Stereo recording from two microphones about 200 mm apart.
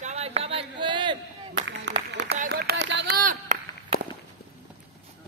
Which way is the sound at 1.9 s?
60° right (ahead or behind).